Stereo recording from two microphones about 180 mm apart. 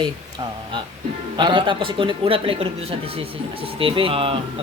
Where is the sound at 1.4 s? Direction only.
25° right (ahead or behind).